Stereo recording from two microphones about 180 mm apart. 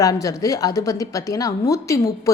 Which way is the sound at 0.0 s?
20° left (ahead or behind).